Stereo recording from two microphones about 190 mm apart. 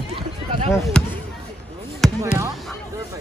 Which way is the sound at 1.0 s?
5° left (ahead or behind).